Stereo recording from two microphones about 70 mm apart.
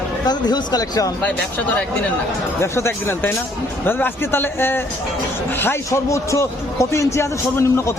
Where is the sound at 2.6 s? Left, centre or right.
Left.